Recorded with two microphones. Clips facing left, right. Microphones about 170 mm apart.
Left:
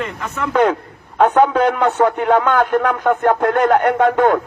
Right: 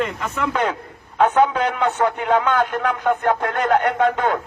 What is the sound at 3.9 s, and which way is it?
Speech, 55° left (ahead or behind).